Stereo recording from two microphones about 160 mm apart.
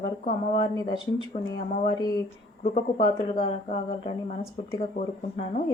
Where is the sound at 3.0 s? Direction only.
35° left (ahead or behind).